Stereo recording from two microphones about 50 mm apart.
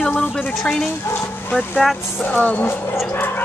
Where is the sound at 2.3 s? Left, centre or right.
Left.